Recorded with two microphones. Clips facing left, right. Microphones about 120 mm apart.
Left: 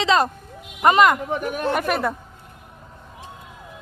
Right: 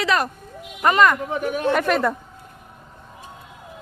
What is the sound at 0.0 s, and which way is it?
Speech, 25° left (ahead or behind).